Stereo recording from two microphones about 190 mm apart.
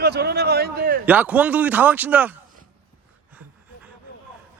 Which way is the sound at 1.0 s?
10° right (ahead or behind).